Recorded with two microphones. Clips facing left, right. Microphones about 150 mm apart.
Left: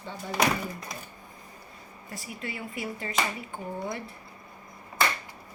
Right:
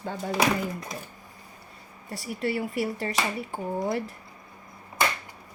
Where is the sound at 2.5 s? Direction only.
40° right (ahead or behind).